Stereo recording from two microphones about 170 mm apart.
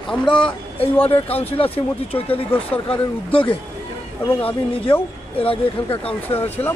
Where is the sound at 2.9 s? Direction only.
30° left (ahead or behind).